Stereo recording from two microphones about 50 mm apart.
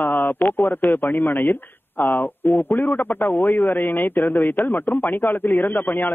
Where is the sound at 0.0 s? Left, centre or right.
Left.